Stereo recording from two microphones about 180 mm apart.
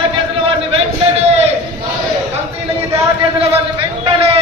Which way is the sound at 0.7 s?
35° right (ahead or behind).